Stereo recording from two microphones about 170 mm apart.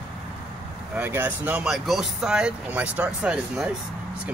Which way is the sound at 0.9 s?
10° right (ahead or behind).